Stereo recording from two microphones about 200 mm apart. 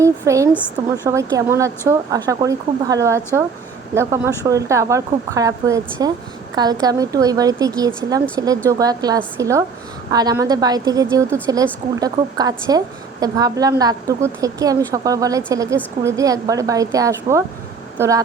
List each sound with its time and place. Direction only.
0.0 s a woman's voice: 15° right (ahead or behind)
0.5 s a woman's voice: 10° left (ahead or behind)
1.0 s a woman's voice: 15° right (ahead or behind)